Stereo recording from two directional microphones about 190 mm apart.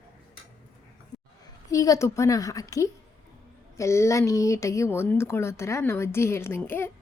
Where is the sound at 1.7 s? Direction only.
15° left (ahead or behind).